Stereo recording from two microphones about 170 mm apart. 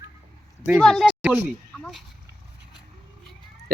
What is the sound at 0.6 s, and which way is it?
Speech, centre (ahead or behind).